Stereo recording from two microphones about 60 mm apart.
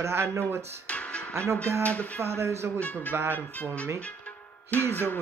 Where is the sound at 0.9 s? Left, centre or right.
Left.